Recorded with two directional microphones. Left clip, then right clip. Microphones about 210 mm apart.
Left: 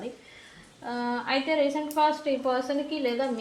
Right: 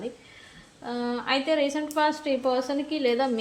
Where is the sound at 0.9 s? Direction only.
25° right (ahead or behind).